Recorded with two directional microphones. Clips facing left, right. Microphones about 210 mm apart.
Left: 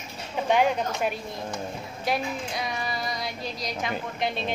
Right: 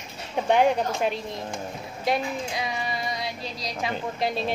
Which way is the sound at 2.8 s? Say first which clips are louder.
Right 1 dB; 25° right (ahead or behind).